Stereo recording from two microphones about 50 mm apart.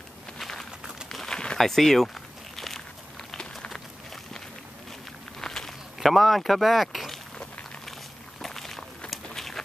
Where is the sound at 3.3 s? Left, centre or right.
Centre.